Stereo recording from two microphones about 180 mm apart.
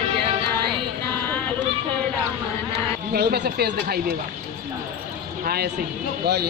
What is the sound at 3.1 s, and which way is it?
Speech, 65° right (ahead or behind).